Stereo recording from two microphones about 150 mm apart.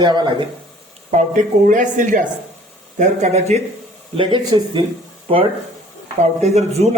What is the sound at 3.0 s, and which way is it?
Speech, 50° right (ahead or behind).